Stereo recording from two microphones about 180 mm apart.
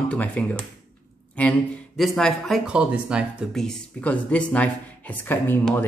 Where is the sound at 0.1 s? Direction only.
5° left (ahead or behind).